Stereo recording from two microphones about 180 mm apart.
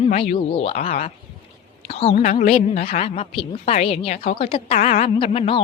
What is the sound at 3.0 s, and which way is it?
A woman's voice, 30° left (ahead or behind).